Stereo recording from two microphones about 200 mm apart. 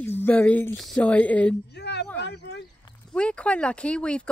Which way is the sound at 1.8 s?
60° left (ahead or behind).